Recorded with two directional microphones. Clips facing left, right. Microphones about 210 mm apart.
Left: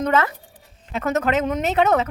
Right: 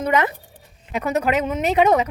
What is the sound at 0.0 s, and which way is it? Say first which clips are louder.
Speech: even; 15° right (ahead or behind).